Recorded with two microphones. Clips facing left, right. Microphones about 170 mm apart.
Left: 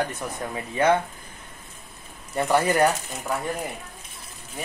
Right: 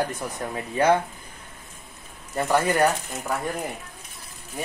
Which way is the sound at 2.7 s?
Centre (ahead or behind).